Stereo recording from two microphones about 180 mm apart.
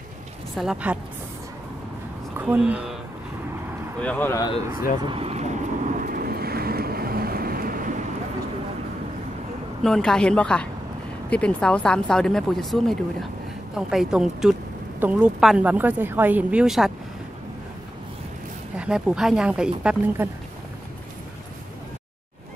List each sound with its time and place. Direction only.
0.6 s speech: 5° right (ahead or behind)
2.3 s speech: 10° right (ahead or behind)
4.0 s speech: 10° left (ahead or behind)
4.6 s speech: 15° right (ahead or behind)
5.0 s vehicle: 30° right (ahead or behind); by 7.9 s 55° right (ahead or behind)
9.8 s speech: 5° left (ahead or behind)
18.8 s speech: 5° right (ahead or behind)